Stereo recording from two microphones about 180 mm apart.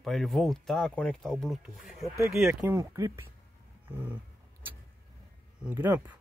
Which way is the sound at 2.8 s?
15° right (ahead or behind).